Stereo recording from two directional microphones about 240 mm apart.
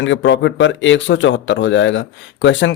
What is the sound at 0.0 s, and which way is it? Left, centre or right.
Speech, left.